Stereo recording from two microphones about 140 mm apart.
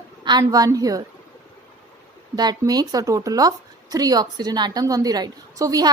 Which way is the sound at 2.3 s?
30° right (ahead or behind).